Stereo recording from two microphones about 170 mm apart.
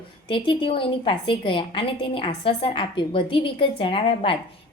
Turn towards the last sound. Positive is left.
turn(degrees=30)  # may be behind; listen again after turning